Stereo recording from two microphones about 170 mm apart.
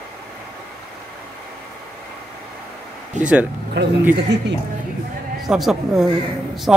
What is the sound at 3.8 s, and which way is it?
Speech, 85° right.